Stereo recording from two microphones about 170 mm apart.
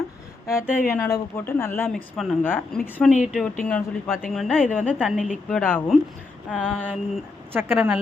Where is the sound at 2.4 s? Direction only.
10° left (ahead or behind).